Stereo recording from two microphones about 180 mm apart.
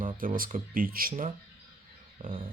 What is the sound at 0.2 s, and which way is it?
Speech, 50° right (ahead or behind).